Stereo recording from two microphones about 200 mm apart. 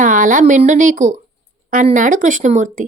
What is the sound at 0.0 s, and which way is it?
A woman's voice, 40° right (ahead or behind).